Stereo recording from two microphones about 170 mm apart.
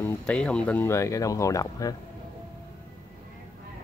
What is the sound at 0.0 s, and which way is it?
Speech, 5° left (ahead or behind).